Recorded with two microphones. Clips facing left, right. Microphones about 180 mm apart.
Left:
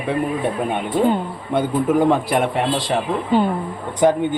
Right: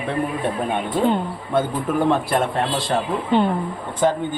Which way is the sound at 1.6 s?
15° left (ahead or behind).